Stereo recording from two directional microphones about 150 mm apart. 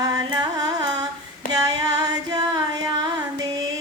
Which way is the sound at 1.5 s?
25° right (ahead or behind).